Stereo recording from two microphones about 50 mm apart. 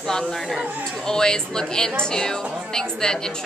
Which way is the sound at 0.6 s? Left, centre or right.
Right.